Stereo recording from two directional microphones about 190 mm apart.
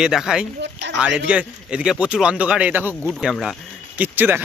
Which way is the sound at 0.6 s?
65° right (ahead or behind).